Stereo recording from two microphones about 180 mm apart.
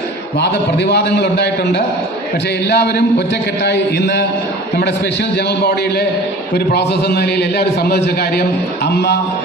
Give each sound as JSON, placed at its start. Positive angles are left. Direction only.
{"t": 0.3, "sound": "a man's voice", "side_deg": 70}
{"t": 5.5, "sound": "a man's voice", "side_deg": 65}